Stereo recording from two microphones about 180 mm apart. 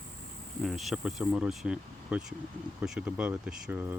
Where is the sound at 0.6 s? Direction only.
Centre (ahead or behind).